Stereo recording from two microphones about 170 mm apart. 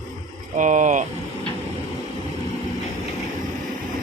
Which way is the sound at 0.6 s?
45° right (ahead or behind).